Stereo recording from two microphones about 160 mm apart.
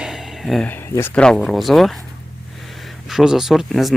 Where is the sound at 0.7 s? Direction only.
15° left (ahead or behind).